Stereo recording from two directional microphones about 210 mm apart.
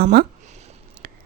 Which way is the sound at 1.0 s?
45° right (ahead or behind).